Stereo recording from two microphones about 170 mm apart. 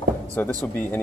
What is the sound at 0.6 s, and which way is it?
Speech, 10° left (ahead or behind).